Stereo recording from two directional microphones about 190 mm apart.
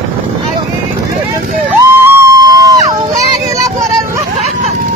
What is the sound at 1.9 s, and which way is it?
Music, 15° right (ahead or behind).